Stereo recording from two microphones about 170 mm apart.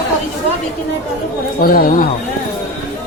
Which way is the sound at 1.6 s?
60° left (ahead or behind).